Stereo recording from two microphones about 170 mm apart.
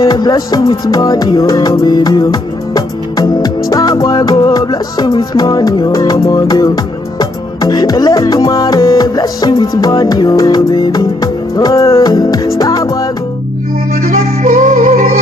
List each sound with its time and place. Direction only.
0.0 s music: 20° left (ahead or behind)
14.1 s music: 50° right (ahead or behind)